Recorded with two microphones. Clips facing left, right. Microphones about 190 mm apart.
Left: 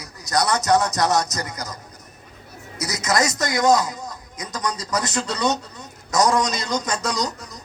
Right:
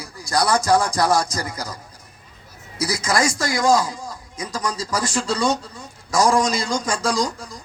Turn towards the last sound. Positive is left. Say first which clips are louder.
# right 3 dB
turn(degrees=-30)  # may be behind; listen again after turning